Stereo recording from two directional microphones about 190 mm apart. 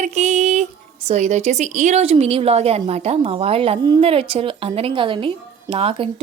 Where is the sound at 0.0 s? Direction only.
35° right (ahead or behind).